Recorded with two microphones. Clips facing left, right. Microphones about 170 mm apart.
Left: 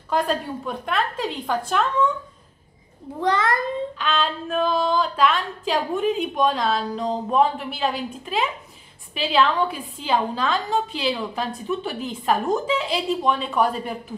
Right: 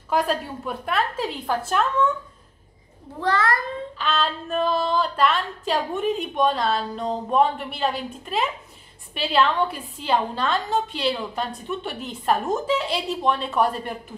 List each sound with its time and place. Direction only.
0.1 s a woman's voice: 5° right (ahead or behind)
3.2 s a child's voice: 20° left (ahead or behind)
4.0 s a woman's voice: centre (ahead or behind)